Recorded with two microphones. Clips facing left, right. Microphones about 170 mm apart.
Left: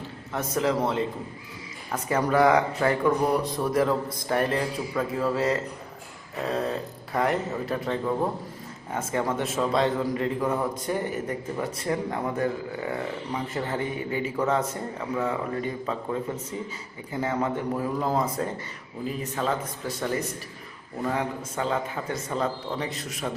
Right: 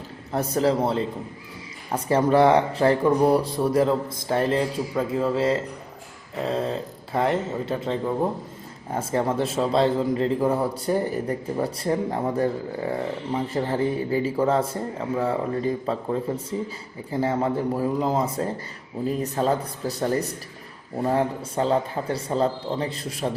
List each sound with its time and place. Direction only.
0.3 s a man's voice: 35° right (ahead or behind)